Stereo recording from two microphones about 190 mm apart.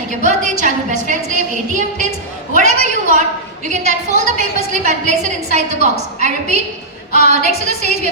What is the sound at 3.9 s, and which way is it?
A woman's voice, 40° right (ahead or behind).